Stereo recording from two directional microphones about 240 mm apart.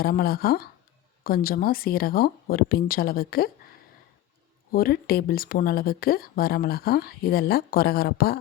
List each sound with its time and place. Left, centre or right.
0.0 s speech: left
4.7 s speech: left